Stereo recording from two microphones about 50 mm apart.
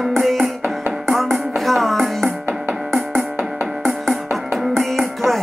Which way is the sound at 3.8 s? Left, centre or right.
Centre.